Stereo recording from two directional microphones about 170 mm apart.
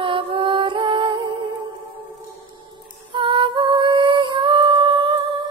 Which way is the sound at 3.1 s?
30° right (ahead or behind).